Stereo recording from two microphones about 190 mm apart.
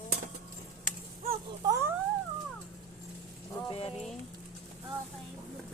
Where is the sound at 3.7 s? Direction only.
30° left (ahead or behind).